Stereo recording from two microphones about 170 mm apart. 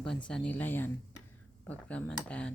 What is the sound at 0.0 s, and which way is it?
Speech, 5° left (ahead or behind).